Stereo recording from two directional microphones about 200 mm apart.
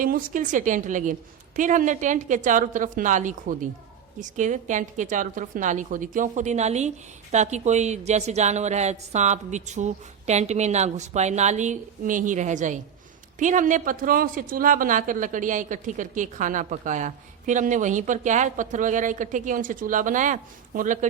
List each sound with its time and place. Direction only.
0.0 s a woman's voice: 40° right (ahead or behind)